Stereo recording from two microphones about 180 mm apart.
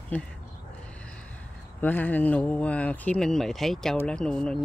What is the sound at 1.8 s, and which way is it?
Speech, 10° left (ahead or behind).